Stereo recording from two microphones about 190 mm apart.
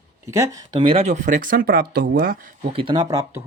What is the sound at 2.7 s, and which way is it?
Speech, 25° right (ahead or behind).